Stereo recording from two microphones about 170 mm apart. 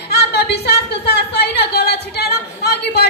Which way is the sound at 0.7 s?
70° left (ahead or behind).